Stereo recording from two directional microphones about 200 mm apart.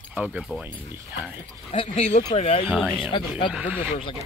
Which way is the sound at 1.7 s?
30° left (ahead or behind).